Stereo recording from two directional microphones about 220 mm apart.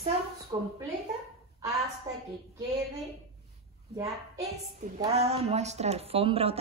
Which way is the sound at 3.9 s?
15° right (ahead or behind).